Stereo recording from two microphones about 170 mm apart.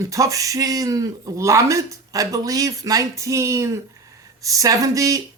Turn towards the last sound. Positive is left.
turn(degrees=-20)  # may be behind; listen again after turning